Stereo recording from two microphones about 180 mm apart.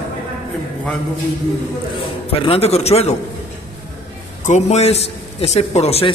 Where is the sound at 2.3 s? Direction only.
35° left (ahead or behind).